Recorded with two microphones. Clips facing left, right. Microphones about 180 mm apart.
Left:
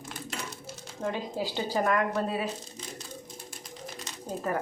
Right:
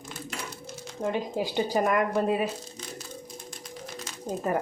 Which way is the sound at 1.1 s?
15° right (ahead or behind).